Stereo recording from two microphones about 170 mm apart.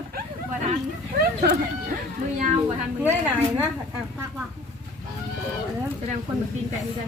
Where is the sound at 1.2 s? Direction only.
55° right (ahead or behind).